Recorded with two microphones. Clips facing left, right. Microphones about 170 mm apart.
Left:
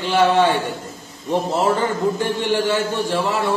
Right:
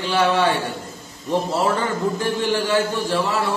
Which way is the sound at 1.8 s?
20° left (ahead or behind).